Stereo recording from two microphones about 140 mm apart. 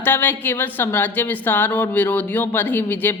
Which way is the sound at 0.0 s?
15° left (ahead or behind).